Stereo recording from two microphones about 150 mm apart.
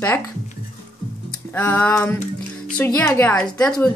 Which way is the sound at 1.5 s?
10° left (ahead or behind).